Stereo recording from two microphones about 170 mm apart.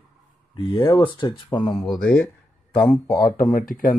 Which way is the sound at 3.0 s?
20° left (ahead or behind).